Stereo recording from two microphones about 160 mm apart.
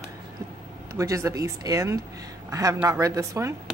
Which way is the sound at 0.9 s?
20° right (ahead or behind).